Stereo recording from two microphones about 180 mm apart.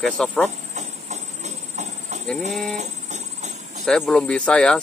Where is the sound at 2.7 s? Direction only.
40° right (ahead or behind).